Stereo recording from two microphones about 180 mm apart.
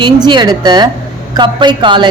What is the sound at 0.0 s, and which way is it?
Speech, 25° right (ahead or behind).